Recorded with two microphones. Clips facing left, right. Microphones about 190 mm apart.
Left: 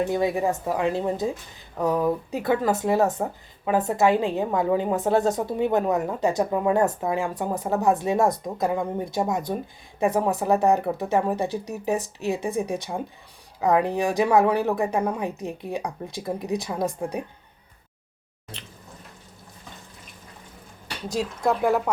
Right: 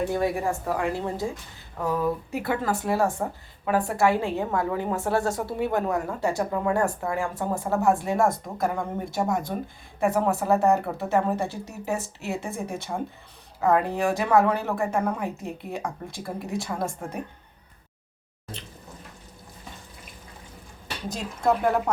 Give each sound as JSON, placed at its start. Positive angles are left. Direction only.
{"t": 0.1, "sound": "a woman's voice", "side_deg": 20}
{"t": 21.1, "sound": "speech", "side_deg": 10}